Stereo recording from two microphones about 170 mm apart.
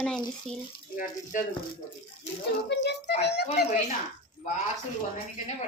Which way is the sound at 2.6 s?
85° left.